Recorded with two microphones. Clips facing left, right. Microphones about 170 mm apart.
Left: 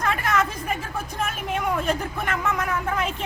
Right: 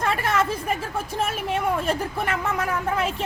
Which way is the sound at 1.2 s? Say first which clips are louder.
Right 2 dB; 30° right (ahead or behind).